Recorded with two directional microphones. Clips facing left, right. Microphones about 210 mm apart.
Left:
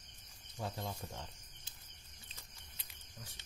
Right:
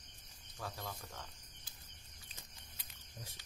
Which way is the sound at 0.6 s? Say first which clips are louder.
Left 4 dB; 25° left (ahead or behind).